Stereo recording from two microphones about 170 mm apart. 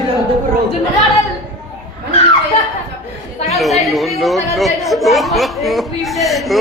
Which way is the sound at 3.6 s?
Centre (ahead or behind).